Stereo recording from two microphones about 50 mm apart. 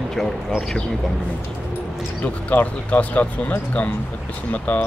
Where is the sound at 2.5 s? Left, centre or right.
Left.